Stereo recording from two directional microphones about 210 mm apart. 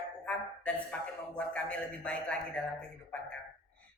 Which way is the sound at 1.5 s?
5° left (ahead or behind).